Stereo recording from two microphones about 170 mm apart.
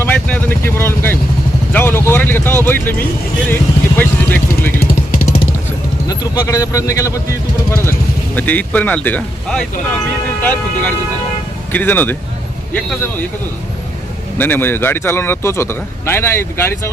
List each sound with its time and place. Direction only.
0.0 s vehicle: 10° left (ahead or behind)
1.7 s a sound: 10° left (ahead or behind)
2.6 s speech: 10° left (ahead or behind)
6.1 s a man's voice: 20° left (ahead or behind)
14.3 s a man's voice: 10° left (ahead or behind)